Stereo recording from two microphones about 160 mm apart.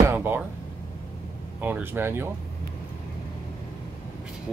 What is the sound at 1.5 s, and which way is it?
Speech, 10° right (ahead or behind).